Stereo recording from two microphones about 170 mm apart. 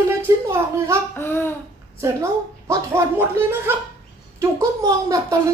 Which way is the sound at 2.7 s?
15° right (ahead or behind).